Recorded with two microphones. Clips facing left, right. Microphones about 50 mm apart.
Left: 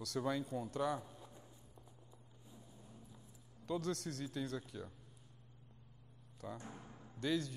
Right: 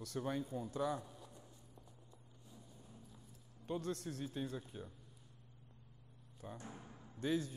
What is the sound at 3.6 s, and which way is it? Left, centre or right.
Speech, left.